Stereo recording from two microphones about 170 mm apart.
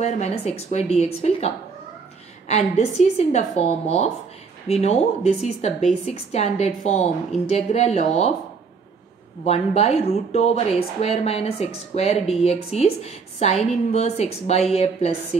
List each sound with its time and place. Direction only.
0.0 s speech: 40° left (ahead or behind)
9.4 s speech: 40° left (ahead or behind)